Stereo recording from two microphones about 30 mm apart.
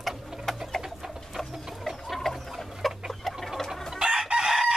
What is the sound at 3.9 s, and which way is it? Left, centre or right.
Chicken, right.